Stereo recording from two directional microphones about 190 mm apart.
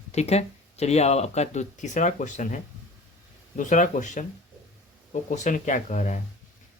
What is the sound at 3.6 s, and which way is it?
Speech, 40° left (ahead or behind).